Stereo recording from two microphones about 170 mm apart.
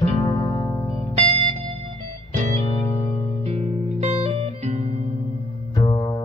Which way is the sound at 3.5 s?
40° right (ahead or behind).